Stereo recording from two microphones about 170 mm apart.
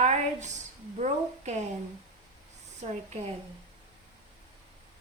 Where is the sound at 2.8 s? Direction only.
45° right (ahead or behind).